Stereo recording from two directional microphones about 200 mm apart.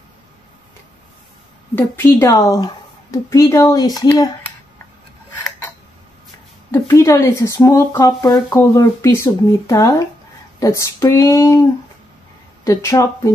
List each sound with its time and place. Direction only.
1.8 s speech: 10° left (ahead or behind)
6.7 s speech: 15° left (ahead or behind)
12.6 s speech: 15° left (ahead or behind)